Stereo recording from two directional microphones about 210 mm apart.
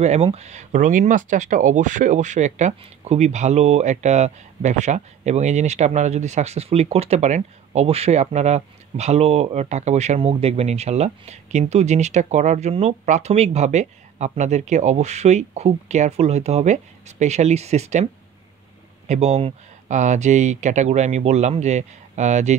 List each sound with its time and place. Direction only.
0.0 s speech: 30° right (ahead or behind)
19.0 s speech: 30° right (ahead or behind)